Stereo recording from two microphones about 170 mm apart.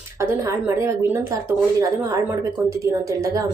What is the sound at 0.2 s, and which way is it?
A woman's voice, 15° right (ahead or behind).